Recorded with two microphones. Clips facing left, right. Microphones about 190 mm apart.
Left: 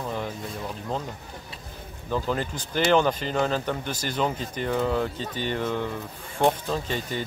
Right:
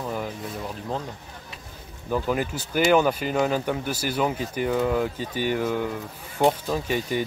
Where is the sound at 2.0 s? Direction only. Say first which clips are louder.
Right 2 dB; 10° right (ahead or behind).